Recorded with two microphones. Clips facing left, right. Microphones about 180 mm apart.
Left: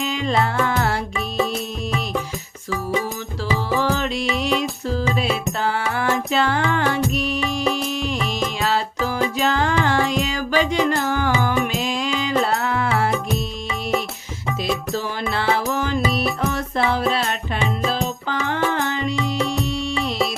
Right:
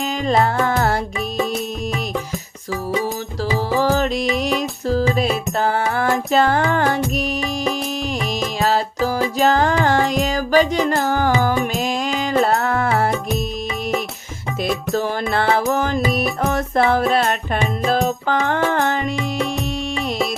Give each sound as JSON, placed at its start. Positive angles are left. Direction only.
{"t": 0.0, "sound": "music", "side_deg": -40}
{"t": 3.7, "sound": "music", "side_deg": -40}
{"t": 14.9, "sound": "music", "side_deg": -50}